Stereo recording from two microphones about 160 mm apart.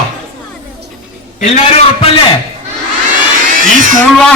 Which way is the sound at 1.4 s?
45° left (ahead or behind).